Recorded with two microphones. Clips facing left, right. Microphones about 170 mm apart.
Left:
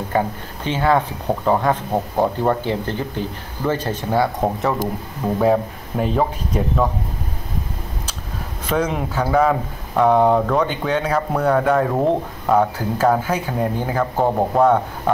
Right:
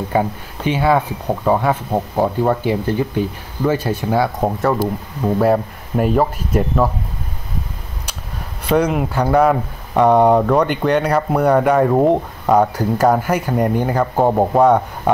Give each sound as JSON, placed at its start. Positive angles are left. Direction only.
{"t": 0.1, "sound": "speech", "side_deg": -15}
{"t": 4.4, "sound": "speech", "side_deg": 0}
{"t": 8.6, "sound": "speech", "side_deg": -10}